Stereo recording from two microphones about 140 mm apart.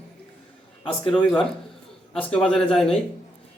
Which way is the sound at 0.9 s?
40° left (ahead or behind).